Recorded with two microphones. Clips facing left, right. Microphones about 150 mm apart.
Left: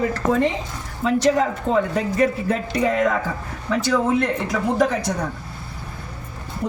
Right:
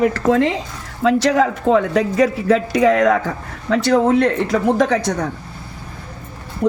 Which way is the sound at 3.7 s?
75° right (ahead or behind).